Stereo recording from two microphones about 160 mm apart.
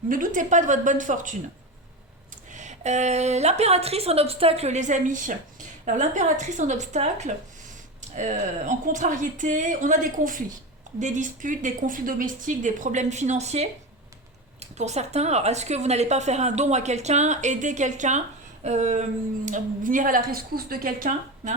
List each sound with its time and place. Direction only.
0.1 s a woman's voice: 55° right (ahead or behind)
2.5 s a woman's voice: 50° right (ahead or behind)